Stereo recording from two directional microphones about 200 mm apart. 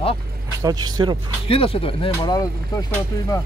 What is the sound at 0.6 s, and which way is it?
Speech, 20° right (ahead or behind).